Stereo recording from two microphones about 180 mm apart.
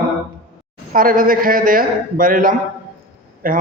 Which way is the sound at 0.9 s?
50° right (ahead or behind).